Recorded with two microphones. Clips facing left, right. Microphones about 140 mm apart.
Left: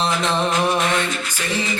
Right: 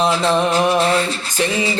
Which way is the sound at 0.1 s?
30° right (ahead or behind).